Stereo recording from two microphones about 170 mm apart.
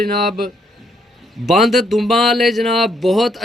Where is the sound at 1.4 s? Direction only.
Centre (ahead or behind).